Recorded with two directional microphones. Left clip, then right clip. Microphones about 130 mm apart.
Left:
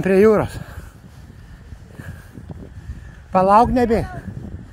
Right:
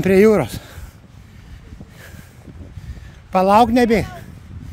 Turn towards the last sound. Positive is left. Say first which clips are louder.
# right 2 dB
turn(degrees=-65)  # may be behind; listen again after turning